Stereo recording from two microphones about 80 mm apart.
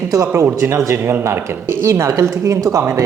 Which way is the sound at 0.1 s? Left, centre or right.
Right.